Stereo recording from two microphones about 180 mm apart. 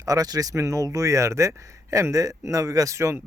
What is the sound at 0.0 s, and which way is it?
Speech, 20° right (ahead or behind).